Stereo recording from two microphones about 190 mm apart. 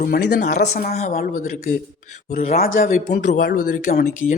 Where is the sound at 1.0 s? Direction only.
35° left (ahead or behind).